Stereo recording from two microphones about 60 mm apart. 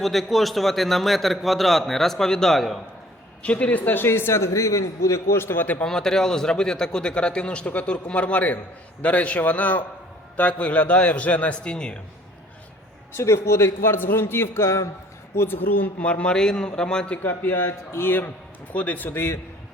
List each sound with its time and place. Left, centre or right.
0.0 s a man's voice: centre
3.4 s a man's voice: left
5.4 s a man's voice: left
5.8 s a man's voice: centre
13.1 s a man's voice: left
15.4 s a man's voice: left
16.0 s a man's voice: centre
17.2 s a man's voice: left